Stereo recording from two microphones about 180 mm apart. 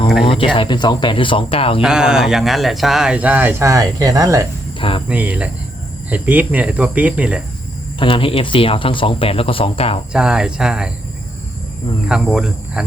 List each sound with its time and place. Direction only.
0.3 s speech: 30° left (ahead or behind)
1.8 s speech: 5° right (ahead or behind)
4.8 s speech: 30° left (ahead or behind)
5.0 s speech: 10° right (ahead or behind)
7.9 s speech: 30° left (ahead or behind)
10.1 s speech: 5° right (ahead or behind)
12.0 s speech: 5° right (ahead or behind)